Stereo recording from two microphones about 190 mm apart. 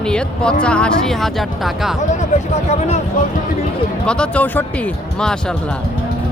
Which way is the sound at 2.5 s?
35° left (ahead or behind).